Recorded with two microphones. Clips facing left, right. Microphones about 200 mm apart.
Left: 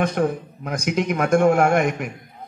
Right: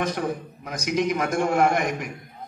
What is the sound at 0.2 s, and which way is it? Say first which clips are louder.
A man's voice: left 6 dB; 50° left (ahead or behind).